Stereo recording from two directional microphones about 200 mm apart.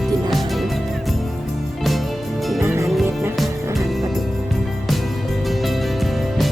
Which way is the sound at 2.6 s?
15° right (ahead or behind).